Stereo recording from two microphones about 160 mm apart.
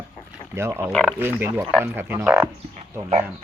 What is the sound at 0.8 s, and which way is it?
Speech, centre (ahead or behind).